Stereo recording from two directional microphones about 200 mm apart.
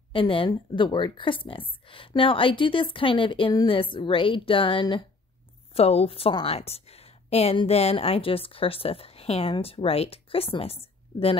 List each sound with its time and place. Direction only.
0.1 s a woman's voice: 25° left (ahead or behind)